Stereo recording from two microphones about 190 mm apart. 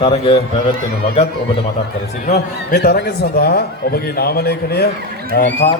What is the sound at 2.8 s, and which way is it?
Speech, 60° left (ahead or behind).